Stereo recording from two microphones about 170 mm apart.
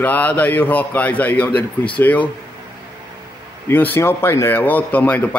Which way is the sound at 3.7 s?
10° left (ahead or behind).